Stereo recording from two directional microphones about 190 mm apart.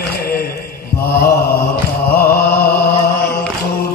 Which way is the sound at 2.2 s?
55° left (ahead or behind).